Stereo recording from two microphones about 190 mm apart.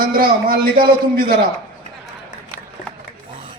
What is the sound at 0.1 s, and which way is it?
A man's voice, 50° right (ahead or behind).